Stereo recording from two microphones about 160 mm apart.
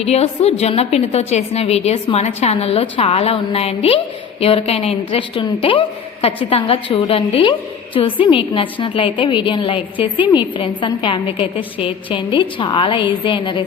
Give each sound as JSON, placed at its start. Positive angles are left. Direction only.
{"t": 0.0, "sound": "a woman's voice", "side_deg": 40}